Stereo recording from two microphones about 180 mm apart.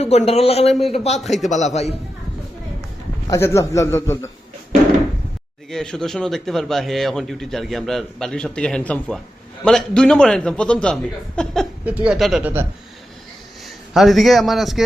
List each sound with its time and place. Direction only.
0.0 s a man's voice: 35° left (ahead or behind)
3.2 s a man's voice: 15° left (ahead or behind)
5.7 s a man's voice: 5° left (ahead or behind)
11.9 s speech: 5° right (ahead or behind)
13.9 s a man's voice: centre (ahead or behind)